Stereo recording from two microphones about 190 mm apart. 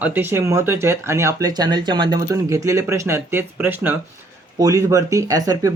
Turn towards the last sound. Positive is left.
turn(degrees=-20)  # may be behind; listen again after turning